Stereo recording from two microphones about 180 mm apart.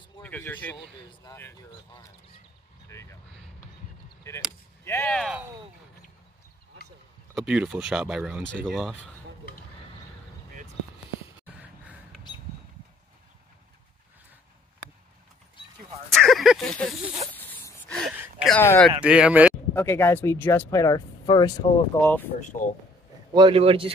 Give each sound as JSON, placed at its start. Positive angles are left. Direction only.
{"t": 0.2, "sound": "speech", "side_deg": 10}
{"t": 2.9, "sound": "speech", "side_deg": 15}
{"t": 4.5, "sound": "speech", "side_deg": 15}
{"t": 7.3, "sound": "speech", "side_deg": -5}
{"t": 11.4, "sound": "a sound", "side_deg": -10}
{"t": 16.1, "sound": "speech", "side_deg": 0}
{"t": 17.3, "sound": "a sound", "side_deg": 10}
{"t": 18.5, "sound": "speech", "side_deg": 10}
{"t": 18.9, "sound": "speech", "side_deg": -5}
{"t": 19.7, "sound": "speech", "side_deg": 10}
{"t": 22.4, "sound": "speech", "side_deg": 45}
{"t": 23.3, "sound": "speech", "side_deg": -30}